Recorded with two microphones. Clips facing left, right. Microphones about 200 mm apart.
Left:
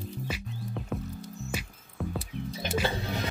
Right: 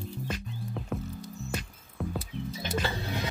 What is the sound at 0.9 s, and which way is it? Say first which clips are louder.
Music: even; centre (ahead or behind).